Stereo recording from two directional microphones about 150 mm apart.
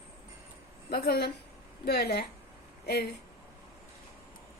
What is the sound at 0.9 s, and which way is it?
Speech, 90° left.